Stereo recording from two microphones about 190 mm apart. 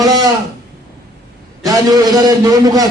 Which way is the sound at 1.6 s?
20° right (ahead or behind).